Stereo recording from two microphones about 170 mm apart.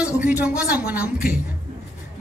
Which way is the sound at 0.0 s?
10° right (ahead or behind).